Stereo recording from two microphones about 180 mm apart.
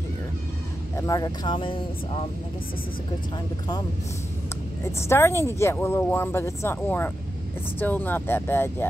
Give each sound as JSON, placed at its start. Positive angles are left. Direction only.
{"t": 0.9, "sound": "speech", "side_deg": 20}
{"t": 5.0, "sound": "speech", "side_deg": 15}